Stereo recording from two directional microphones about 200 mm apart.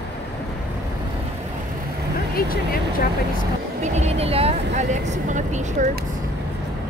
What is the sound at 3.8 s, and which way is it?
Vehicle, 35° right (ahead or behind).